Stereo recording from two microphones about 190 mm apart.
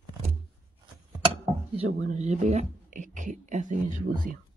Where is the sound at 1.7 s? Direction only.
35° right (ahead or behind).